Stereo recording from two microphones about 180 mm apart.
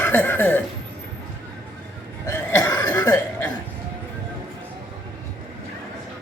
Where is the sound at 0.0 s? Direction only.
10° left (ahead or behind).